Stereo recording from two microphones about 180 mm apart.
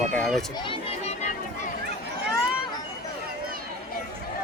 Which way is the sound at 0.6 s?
35° left (ahead or behind).